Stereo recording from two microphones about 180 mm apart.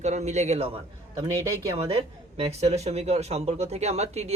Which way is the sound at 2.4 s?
35° right (ahead or behind).